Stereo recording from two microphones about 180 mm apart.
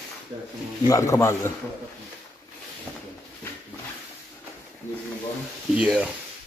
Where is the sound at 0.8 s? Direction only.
15° left (ahead or behind).